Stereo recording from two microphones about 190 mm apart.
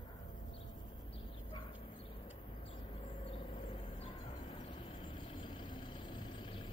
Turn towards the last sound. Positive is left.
turn(degrees=25)  # may be behind; listen again after turning